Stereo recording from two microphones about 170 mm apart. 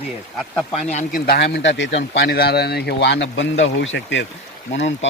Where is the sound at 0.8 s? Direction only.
40° left (ahead or behind).